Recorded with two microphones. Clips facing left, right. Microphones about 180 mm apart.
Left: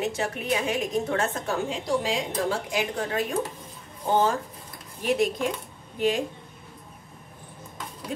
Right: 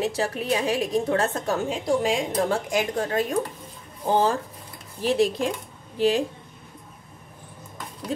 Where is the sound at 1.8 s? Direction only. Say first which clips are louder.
Right 3 dB; 50° right (ahead or behind).